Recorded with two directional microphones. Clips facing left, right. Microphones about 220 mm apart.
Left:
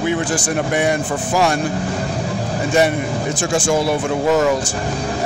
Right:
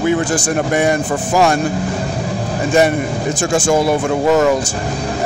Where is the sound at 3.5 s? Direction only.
45° right (ahead or behind).